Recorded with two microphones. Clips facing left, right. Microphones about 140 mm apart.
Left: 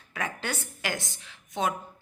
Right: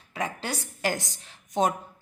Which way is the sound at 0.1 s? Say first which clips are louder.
Right 2 dB; 30° right (ahead or behind).